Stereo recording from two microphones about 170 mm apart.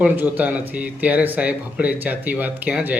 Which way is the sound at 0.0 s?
10° right (ahead or behind).